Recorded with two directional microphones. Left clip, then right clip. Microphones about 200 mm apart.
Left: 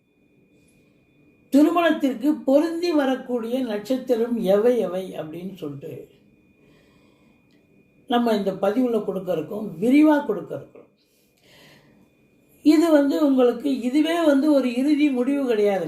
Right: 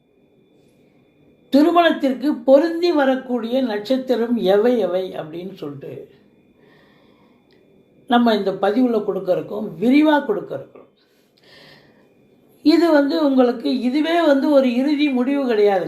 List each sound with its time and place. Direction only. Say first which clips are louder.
1.5 s speech: right 4 dB; 5° left (ahead or behind)
8.0 s speech: right 5 dB; 5° left (ahead or behind)
11.4 s gasp: right 5 dB; 5° left (ahead or behind)
12.6 s speech: right 2 dB; 5° left (ahead or behind)